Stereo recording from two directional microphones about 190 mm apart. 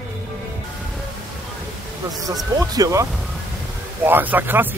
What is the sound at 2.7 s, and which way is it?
Speech, 20° right (ahead or behind).